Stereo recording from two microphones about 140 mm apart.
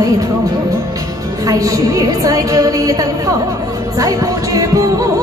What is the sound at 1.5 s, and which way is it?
A woman's voice, 25° right (ahead or behind).